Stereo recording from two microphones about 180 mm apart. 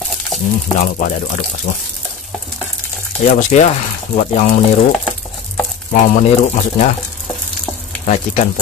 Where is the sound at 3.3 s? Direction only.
40° left (ahead or behind).